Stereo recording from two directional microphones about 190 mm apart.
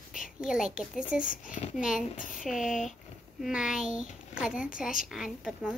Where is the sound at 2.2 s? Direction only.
45° left (ahead or behind).